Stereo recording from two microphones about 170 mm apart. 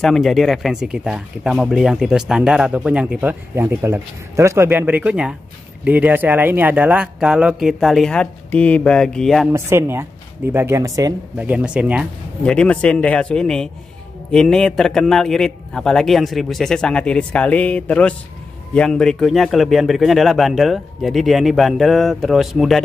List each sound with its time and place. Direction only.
0.0 s speech: centre (ahead or behind)
9.5 s speech: 15° right (ahead or behind)
11.3 s speech: 10° right (ahead or behind)
12.4 s speech: 5° left (ahead or behind)